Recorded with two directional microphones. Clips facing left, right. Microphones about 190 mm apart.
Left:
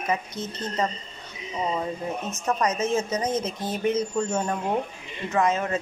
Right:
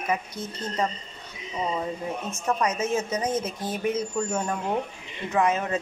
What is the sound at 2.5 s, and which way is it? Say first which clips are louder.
Speech: left 2 dB; 10° right (ahead or behind).